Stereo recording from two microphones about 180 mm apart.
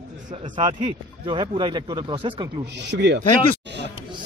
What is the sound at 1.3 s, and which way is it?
Speech, 25° right (ahead or behind).